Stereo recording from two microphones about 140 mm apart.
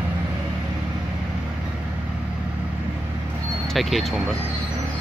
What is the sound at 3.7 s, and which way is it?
Speech, centre (ahead or behind).